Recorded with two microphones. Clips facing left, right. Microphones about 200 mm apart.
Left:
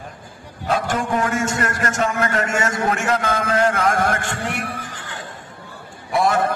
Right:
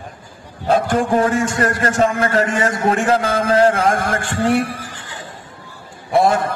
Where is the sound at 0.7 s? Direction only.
35° right (ahead or behind).